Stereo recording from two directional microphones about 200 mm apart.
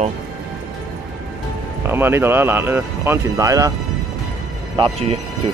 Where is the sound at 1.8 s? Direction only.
10° right (ahead or behind).